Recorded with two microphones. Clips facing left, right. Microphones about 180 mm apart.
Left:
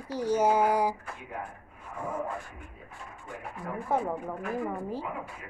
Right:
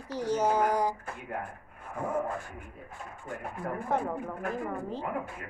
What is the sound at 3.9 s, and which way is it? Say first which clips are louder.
Speech: left 2 dB; 10° left (ahead or behind).